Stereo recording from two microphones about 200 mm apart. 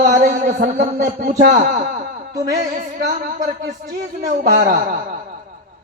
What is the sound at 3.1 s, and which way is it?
Speech, 40° right (ahead or behind).